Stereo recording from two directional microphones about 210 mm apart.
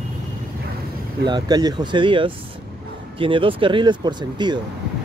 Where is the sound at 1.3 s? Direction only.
20° right (ahead or behind).